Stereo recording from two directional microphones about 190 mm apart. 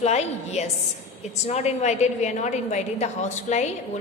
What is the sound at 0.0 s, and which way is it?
A woman's voice, 35° left (ahead or behind).